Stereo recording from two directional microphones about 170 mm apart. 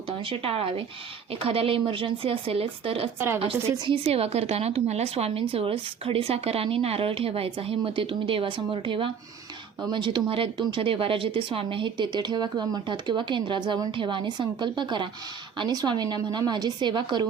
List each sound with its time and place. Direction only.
0.3 s a woman's voice: 35° right (ahead or behind)